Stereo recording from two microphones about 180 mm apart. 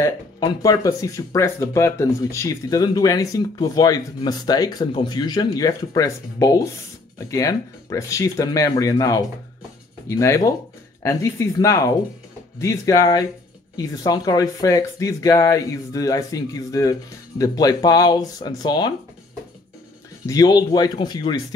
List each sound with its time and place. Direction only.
0.0 s speech: 20° left (ahead or behind)
20.2 s speech: 20° left (ahead or behind)